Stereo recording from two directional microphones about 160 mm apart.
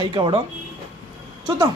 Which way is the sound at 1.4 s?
30° right (ahead or behind).